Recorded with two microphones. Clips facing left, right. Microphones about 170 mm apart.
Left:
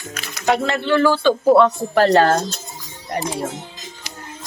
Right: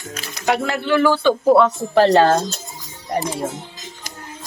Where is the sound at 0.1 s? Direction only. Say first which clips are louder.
Right 2 dB; 30° right (ahead or behind).